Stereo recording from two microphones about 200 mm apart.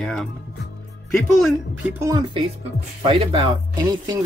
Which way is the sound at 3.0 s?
25° right (ahead or behind).